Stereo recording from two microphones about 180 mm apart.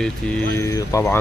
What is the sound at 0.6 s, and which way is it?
Speech, 15° left (ahead or behind).